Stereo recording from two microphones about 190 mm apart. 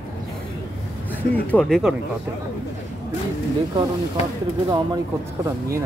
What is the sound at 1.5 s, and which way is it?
Speech, 5° left (ahead or behind).